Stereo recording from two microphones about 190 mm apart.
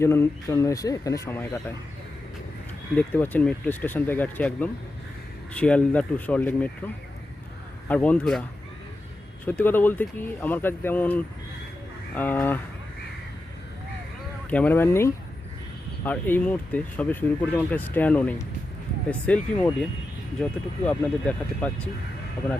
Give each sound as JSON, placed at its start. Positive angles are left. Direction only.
{"t": 0.0, "sound": "speech", "side_deg": 15}
{"t": 2.9, "sound": "speech", "side_deg": 10}
{"t": 9.5, "sound": "speech", "side_deg": 10}
{"t": 14.5, "sound": "speech", "side_deg": 10}